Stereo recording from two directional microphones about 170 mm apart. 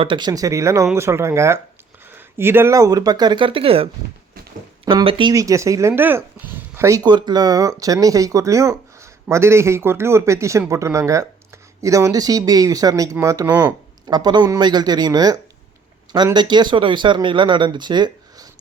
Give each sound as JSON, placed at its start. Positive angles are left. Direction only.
{"t": 0.0, "sound": "a man's voice", "side_deg": -25}
{"t": 4.9, "sound": "a man's voice", "side_deg": -30}